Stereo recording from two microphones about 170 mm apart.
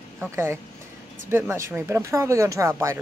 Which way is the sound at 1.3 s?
15° right (ahead or behind).